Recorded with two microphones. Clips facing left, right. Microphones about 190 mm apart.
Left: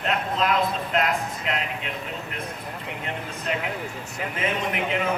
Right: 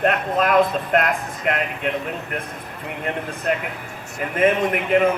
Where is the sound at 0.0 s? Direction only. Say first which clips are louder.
Right 5 dB; 55° right (ahead or behind).